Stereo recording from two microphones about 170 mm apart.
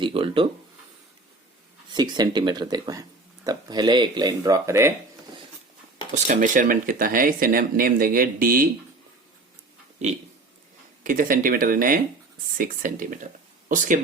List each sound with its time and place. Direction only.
0.0 s speech: 30° right (ahead or behind)
1.9 s speech: 25° right (ahead or behind)
6.2 s speech: 50° right (ahead or behind)
11.0 s speech: 55° right (ahead or behind)